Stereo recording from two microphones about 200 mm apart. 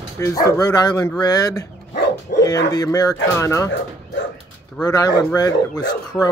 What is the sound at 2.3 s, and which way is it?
Bow-wow, 45° left (ahead or behind).